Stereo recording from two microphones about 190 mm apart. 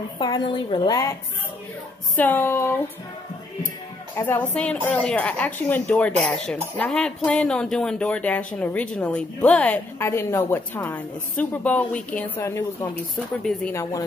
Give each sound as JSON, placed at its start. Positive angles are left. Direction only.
{"t": 0.2, "sound": "a woman's voice", "side_deg": 20}
{"t": 2.1, "sound": "a woman's voice", "side_deg": 10}
{"t": 4.2, "sound": "a woman's voice", "side_deg": 10}